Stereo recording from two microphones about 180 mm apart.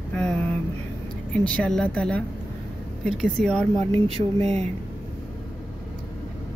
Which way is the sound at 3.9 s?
35° right (ahead or behind).